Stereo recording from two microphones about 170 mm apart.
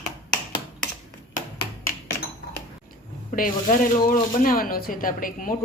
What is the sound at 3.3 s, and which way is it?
Speech, 50° left (ahead or behind).